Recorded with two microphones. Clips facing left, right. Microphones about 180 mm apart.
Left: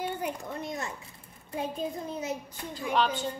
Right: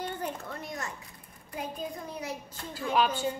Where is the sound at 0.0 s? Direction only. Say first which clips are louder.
Left 2 dB; 15° left (ahead or behind).